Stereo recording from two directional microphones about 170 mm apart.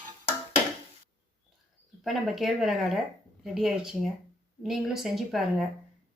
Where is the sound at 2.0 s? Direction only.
Centre (ahead or behind).